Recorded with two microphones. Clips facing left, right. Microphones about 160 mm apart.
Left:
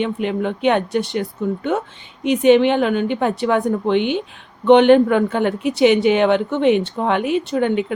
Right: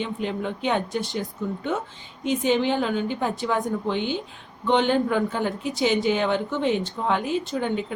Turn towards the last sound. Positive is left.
turn(degrees=65)  # may be behind; listen again after turning